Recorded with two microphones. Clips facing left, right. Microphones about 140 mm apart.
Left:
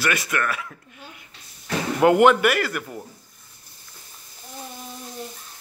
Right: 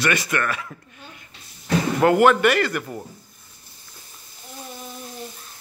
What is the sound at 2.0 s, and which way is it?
Speech, 15° left (ahead or behind).